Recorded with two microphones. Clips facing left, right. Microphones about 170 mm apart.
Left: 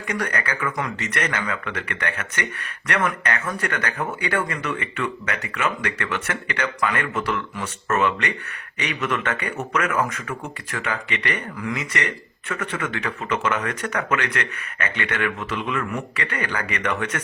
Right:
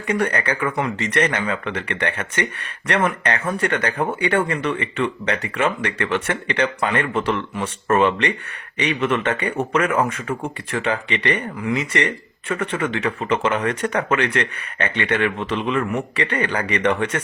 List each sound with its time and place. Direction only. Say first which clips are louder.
0.1 s speech: right 6 dB; 30° right (ahead or behind)